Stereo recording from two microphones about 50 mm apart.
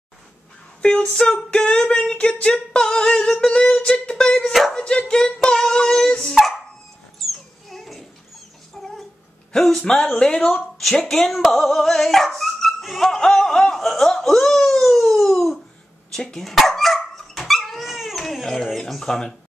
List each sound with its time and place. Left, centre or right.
0.8 s singing: left
3.8 s dog: centre
4.5 s speech: centre
4.7 s dog: centre
7.2 s a sound: centre
9.5 s dog: centre
10.9 s speech: centre
16.4 s dog: centre